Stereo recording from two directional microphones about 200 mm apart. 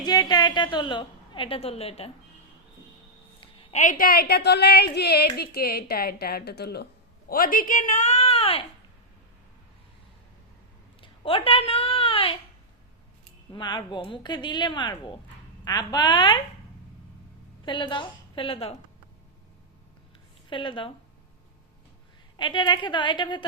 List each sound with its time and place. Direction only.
0.0 s a woman's voice: 20° left (ahead or behind)
3.4 s a woman's voice: 30° left (ahead or behind)
11.0 s a sound: 25° left (ahead or behind)
13.5 s speech: 20° left (ahead or behind)
17.7 s speech: 25° left (ahead or behind)
20.5 s speech: 25° left (ahead or behind)
22.4 s speech: 25° left (ahead or behind)